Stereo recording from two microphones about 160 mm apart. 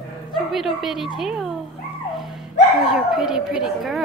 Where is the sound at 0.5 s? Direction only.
Centre (ahead or behind).